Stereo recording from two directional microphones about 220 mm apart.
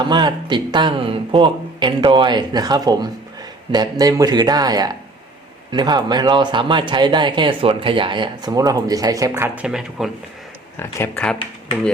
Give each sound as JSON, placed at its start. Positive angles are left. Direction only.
{"t": 0.0, "sound": "speech", "side_deg": -20}
{"t": 10.8, "sound": "speech", "side_deg": 10}